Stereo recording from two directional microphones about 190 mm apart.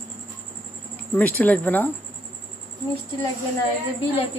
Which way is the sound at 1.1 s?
5° left (ahead or behind).